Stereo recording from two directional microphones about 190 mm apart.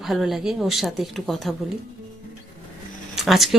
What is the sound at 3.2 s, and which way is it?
Speech, centre (ahead or behind).